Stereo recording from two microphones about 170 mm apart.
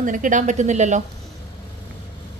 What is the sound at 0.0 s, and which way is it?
Speech, 50° right (ahead or behind).